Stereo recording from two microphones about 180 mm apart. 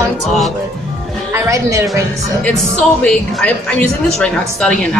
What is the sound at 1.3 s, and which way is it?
Speech, 15° right (ahead or behind).